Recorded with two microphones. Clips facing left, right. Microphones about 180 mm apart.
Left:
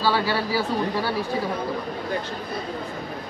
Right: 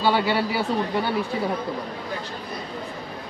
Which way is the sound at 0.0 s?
20° right (ahead or behind).